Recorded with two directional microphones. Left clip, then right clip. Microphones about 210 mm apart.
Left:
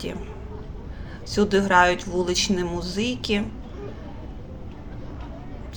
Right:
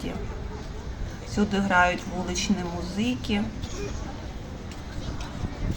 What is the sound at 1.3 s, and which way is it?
A woman's voice, 15° left (ahead or behind).